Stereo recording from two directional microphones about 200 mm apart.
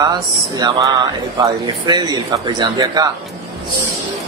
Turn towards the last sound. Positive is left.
turn(degrees=-20)  # may be behind; listen again after turning